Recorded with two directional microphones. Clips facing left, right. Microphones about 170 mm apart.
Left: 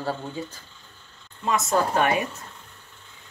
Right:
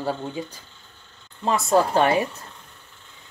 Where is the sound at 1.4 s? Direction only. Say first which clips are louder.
Right 3 dB; 30° right (ahead or behind).